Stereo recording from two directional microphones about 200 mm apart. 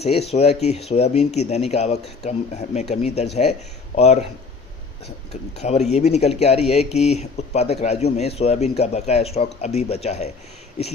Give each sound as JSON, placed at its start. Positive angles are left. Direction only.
{"t": 0.0, "sound": "speech", "side_deg": 30}
{"t": 5.5, "sound": "speech", "side_deg": 35}